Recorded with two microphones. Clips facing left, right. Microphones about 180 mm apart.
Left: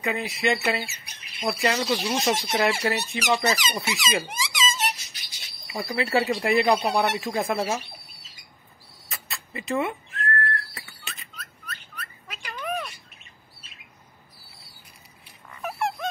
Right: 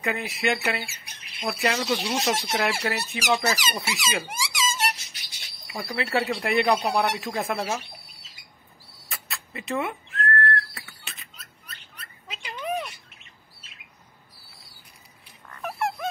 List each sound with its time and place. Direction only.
0.0 s speech: centre (ahead or behind)
5.7 s speech: centre (ahead or behind)
9.1 s whistling: centre (ahead or behind)
12.3 s a sound: 25° right (ahead or behind)
15.4 s dog: 5° left (ahead or behind)